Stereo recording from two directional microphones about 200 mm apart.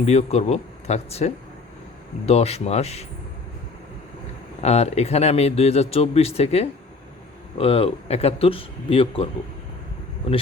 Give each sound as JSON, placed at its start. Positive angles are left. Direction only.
{"t": 0.0, "sound": "speech", "side_deg": 35}
{"t": 4.6, "sound": "speech", "side_deg": 35}
{"t": 10.2, "sound": "speech", "side_deg": 30}